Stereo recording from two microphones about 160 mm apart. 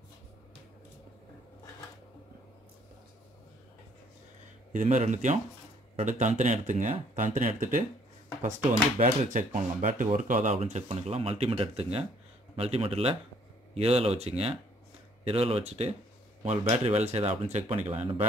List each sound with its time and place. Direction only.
4.7 s speech: 50° right (ahead or behind)